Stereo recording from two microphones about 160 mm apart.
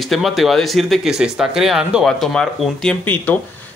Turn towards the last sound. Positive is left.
turn(degrees=10)  # may be behind; listen again after turning